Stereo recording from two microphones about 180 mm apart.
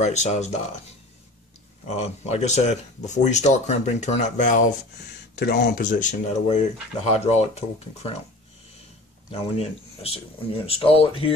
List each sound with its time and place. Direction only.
0.0 s speech: 40° left (ahead or behind)
2.0 s speech: 40° left (ahead or behind)
5.3 s speech: 70° left (ahead or behind)
5.9 s speech: 45° left (ahead or behind)
9.3 s speech: 35° left (ahead or behind)